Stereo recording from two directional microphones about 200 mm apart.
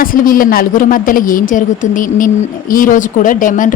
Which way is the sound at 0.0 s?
45° left (ahead or behind).